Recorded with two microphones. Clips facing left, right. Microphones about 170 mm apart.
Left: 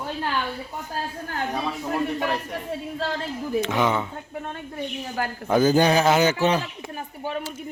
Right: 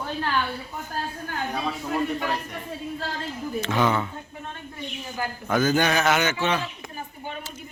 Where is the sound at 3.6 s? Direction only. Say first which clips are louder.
Left 1 dB; 15° left (ahead or behind).